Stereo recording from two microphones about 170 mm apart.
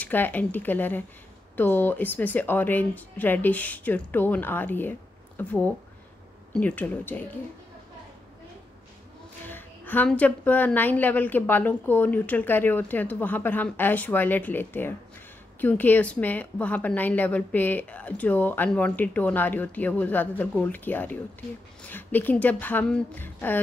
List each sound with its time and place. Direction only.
0.0 s a woman's voice: 10° left (ahead or behind)
9.5 s a woman's voice: 10° left (ahead or behind)